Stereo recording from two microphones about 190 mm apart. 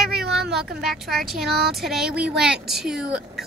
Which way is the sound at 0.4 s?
Centre (ahead or behind).